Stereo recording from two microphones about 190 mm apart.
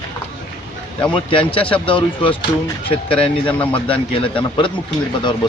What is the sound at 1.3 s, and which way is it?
Speech, 30° left (ahead or behind).